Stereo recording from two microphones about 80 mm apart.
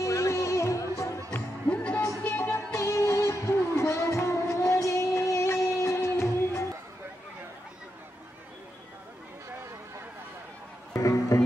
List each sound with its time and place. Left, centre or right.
0.0 s music: left
1.3 s music: centre; by 6.6 s left
11.0 s music: left